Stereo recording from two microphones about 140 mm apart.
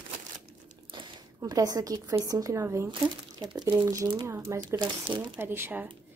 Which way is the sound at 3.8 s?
25° right (ahead or behind).